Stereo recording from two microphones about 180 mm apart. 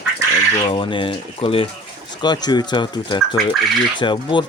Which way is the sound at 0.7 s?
30° left (ahead or behind).